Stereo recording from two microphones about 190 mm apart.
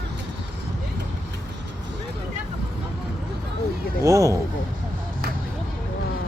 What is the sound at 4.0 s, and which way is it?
Speech, 15° right (ahead or behind).